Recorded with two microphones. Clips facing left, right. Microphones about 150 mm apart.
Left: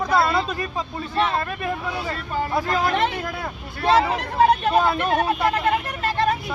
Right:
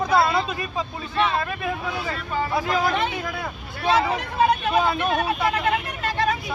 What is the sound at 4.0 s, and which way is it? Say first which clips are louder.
Speech: left 2 dB; 35° left (ahead or behind).